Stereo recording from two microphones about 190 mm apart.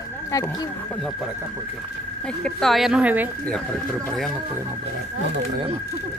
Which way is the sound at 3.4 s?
5° left (ahead or behind).